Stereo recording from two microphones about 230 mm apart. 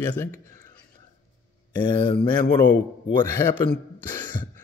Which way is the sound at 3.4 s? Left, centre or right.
Centre.